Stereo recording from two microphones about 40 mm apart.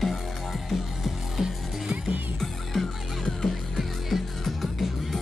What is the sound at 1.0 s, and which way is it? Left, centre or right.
Music, centre.